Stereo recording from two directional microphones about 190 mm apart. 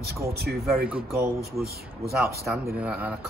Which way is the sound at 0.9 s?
10° right (ahead or behind).